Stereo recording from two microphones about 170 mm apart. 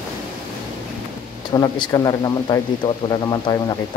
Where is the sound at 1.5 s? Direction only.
25° left (ahead or behind).